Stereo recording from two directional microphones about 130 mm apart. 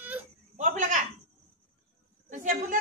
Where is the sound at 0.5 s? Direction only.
65° right (ahead or behind).